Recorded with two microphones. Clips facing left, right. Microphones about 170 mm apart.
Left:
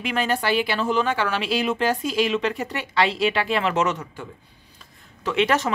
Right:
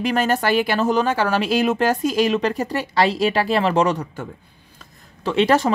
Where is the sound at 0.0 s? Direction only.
40° right (ahead or behind).